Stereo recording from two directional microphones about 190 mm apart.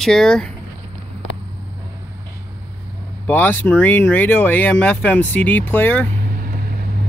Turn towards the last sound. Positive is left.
turn(degrees=10)  # may be behind; listen again after turning